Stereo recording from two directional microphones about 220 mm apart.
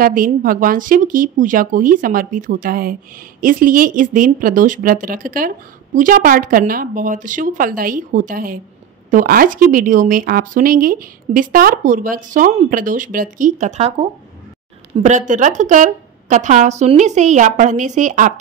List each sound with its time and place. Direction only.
0.0 s speech: 40° right (ahead or behind)
15.0 s speech: 35° right (ahead or behind)